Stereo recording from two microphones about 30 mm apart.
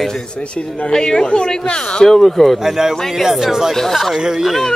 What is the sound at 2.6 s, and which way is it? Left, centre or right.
Speech, centre.